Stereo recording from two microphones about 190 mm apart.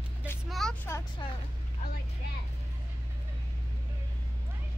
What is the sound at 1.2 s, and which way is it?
Speech, 25° left (ahead or behind).